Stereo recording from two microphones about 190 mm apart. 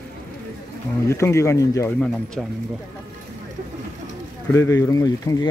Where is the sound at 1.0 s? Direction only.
15° left (ahead or behind).